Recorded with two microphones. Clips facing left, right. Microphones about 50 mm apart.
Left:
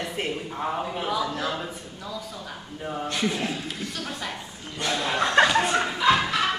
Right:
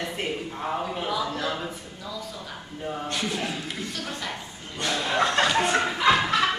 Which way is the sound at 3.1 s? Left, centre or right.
Left.